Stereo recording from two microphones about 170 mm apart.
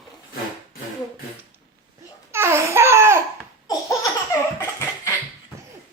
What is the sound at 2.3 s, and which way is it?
Laughter, 15° right (ahead or behind).